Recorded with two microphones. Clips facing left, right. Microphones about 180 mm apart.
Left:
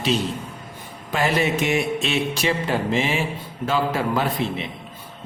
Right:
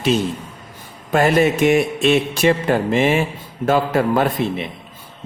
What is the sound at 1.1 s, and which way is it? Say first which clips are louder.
Music: right 6 dB; 50° right (ahead or behind).